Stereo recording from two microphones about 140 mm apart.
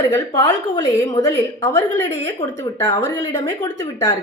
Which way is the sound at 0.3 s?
25° left (ahead or behind).